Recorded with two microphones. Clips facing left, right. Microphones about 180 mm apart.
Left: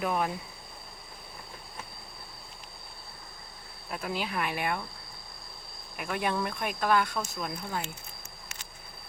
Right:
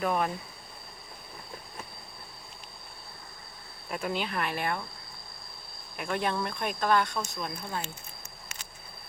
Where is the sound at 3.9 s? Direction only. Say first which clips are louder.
Right 2 dB; centre (ahead or behind).